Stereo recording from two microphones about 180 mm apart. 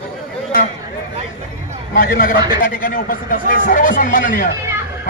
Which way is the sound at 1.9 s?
50° left (ahead or behind).